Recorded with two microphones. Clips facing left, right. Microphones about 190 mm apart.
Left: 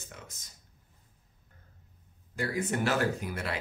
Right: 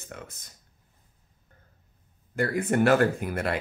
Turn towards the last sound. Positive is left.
turn(degrees=-55)  # may be behind; listen again after turning